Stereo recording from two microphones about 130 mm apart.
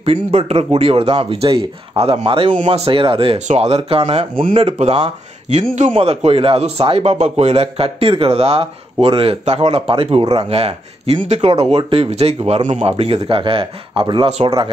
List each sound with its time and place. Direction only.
0.0 s a man's voice: 50° right (ahead or behind)
3.3 s a man's voice: 60° right (ahead or behind)
9.4 s a man's voice: 60° right (ahead or behind)
12.9 s a man's voice: 50° right (ahead or behind)